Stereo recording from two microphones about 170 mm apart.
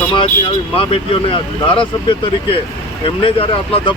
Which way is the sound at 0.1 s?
30° left (ahead or behind).